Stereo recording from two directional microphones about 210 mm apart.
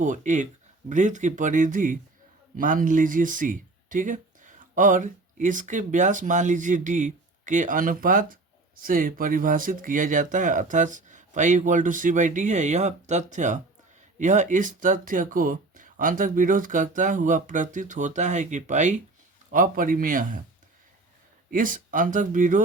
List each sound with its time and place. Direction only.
0.0 s speech: 35° right (ahead or behind)
21.5 s speech: 40° right (ahead or behind)